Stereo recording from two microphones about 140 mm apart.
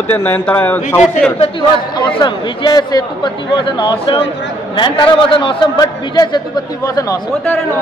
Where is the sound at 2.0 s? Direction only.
30° left (ahead or behind).